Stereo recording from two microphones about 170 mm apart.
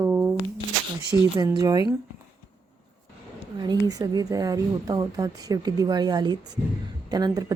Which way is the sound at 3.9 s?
20° right (ahead or behind).